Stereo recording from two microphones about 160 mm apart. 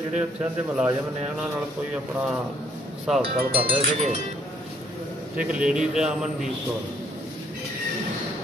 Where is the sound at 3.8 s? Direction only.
50° right (ahead or behind).